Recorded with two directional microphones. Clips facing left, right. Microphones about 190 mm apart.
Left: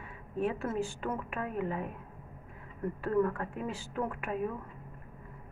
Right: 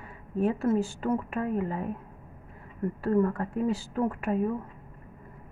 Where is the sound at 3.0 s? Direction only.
35° right (ahead or behind).